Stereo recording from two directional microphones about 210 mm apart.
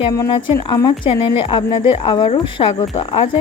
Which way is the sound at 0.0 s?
20° left (ahead or behind).